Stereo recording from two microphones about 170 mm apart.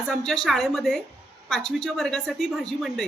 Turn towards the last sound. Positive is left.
turn(degrees=0)  # may be behind; listen again after turning